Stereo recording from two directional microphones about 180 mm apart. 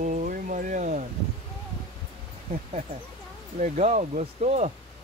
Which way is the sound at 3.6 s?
40° right (ahead or behind).